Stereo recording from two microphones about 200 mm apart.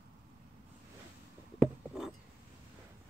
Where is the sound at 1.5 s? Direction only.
5° right (ahead or behind).